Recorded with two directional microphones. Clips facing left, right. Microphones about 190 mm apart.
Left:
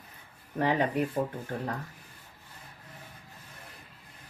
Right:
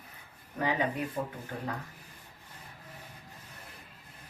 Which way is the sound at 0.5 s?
45° left (ahead or behind).